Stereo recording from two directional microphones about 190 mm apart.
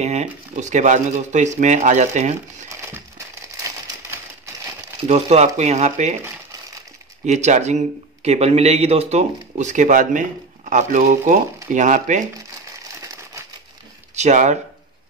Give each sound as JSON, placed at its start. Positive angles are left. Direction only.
{"t": 0.0, "sound": "a man's voice", "side_deg": -40}
{"t": 5.0, "sound": "a man's voice", "side_deg": -35}
{"t": 7.2, "sound": "a man's voice", "side_deg": -40}
{"t": 14.1, "sound": "speech", "side_deg": -40}